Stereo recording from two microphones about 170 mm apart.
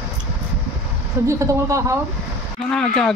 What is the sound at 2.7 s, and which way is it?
Speech, 5° left (ahead or behind).